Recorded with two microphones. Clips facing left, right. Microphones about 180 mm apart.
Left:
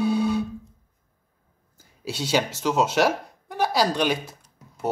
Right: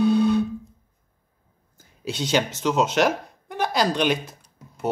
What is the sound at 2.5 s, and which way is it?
Speech, 5° left (ahead or behind).